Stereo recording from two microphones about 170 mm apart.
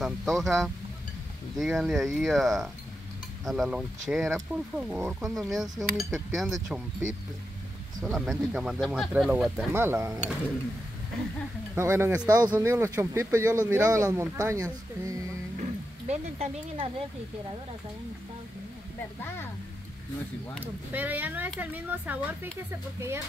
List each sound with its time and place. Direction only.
0.0 s speech: centre (ahead or behind); by 10.2 s 15° right (ahead or behind)
11.7 s speech: 15° right (ahead or behind)
16.1 s speech: 40° right (ahead or behind)
19.2 s speech: 15° left (ahead or behind)
20.6 s speech: 10° right (ahead or behind)